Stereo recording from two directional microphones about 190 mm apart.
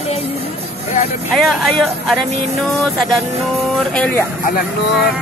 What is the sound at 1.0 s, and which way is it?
Vehicle, 45° left (ahead or behind).